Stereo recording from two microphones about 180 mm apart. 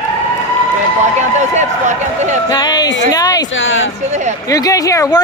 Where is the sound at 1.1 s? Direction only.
40° right (ahead or behind).